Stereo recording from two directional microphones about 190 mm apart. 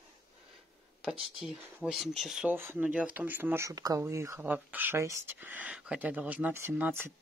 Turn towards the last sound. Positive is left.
turn(degrees=-10)  # may be behind; listen again after turning